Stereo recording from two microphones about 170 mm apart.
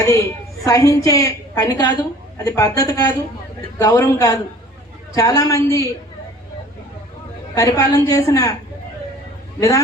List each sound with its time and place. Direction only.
0.0 s a woman's voice: 15° left (ahead or behind)
7.5 s a woman's voice: 20° left (ahead or behind)
9.6 s a man's voice: 20° left (ahead or behind)